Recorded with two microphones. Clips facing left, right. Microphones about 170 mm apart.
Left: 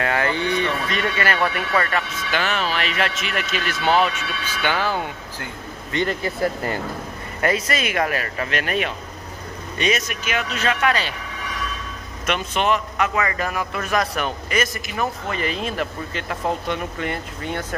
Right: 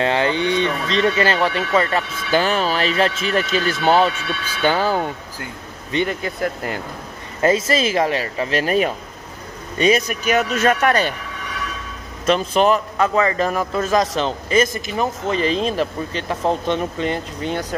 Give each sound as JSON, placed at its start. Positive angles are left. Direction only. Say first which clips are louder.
{"t": 0.0, "sound": "a man's voice", "louder": "right 4 dB", "side_deg": -25}
{"t": 5.9, "sound": "speech", "louder": "right 2 dB", "side_deg": -15}
{"t": 6.2, "sound": "speech", "louder": "left 1 dB", "side_deg": 0}
{"t": 7.4, "sound": "a man's voice", "louder": "right 5 dB", "side_deg": -25}
{"t": 12.3, "sound": "a man's voice", "louder": "right 6 dB", "side_deg": -35}